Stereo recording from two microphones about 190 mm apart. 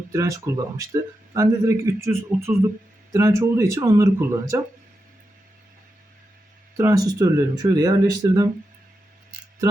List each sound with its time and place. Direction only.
0.1 s speech: 15° right (ahead or behind)
6.7 s speech: 15° right (ahead or behind)